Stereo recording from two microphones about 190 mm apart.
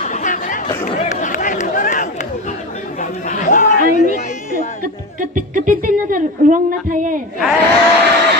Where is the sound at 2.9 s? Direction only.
40° left (ahead or behind).